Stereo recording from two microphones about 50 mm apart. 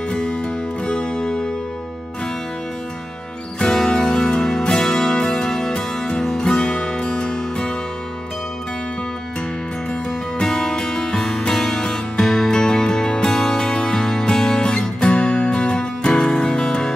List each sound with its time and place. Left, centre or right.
0.1 s music: centre
3.5 s music: centre
10.4 s music: centre